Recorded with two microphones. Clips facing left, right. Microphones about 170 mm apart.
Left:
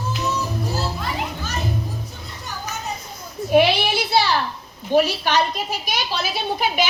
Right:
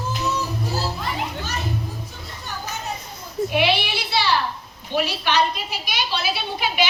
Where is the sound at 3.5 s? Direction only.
45° left (ahead or behind).